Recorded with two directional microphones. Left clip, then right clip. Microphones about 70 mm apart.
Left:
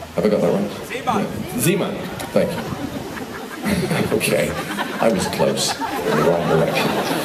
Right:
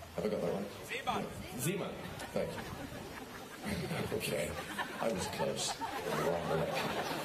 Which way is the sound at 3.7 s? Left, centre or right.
Centre.